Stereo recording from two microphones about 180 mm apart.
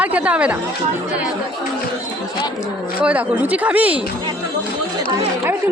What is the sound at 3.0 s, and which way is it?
Speech, 10° right (ahead or behind).